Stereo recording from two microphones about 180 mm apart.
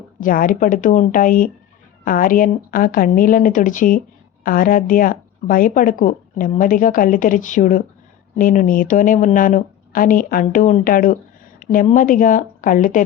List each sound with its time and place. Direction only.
0.2 s speech: 50° left (ahead or behind)